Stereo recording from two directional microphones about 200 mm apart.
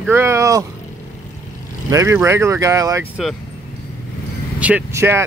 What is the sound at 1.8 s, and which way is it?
Speech, 15° right (ahead or behind).